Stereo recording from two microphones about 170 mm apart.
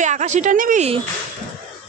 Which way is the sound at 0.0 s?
45° right (ahead or behind).